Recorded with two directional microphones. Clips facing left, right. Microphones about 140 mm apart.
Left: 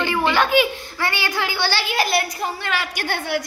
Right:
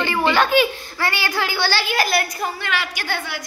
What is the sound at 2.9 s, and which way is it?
Speech, 55° left (ahead or behind).